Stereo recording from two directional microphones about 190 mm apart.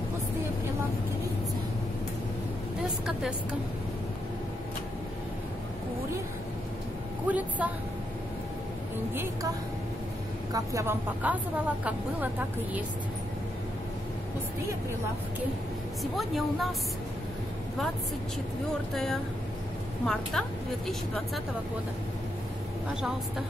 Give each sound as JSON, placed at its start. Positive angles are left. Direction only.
{"t": 3.1, "sound": "a woman's voice", "side_deg": -5}
{"t": 7.2, "sound": "a woman's voice", "side_deg": -10}
{"t": 9.1, "sound": "speech", "side_deg": -10}
{"t": 10.5, "sound": "speech", "side_deg": -15}
{"t": 16.0, "sound": "a woman's voice", "side_deg": 0}
{"t": 20.1, "sound": "a woman's voice", "side_deg": 0}